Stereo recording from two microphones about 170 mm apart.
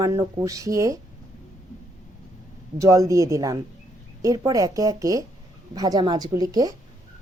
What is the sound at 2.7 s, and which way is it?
A woman's voice, 20° right (ahead or behind).